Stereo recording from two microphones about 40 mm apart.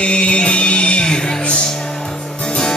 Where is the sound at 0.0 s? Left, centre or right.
Left.